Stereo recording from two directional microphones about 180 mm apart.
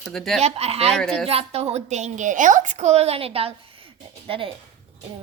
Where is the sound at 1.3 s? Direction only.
35° right (ahead or behind).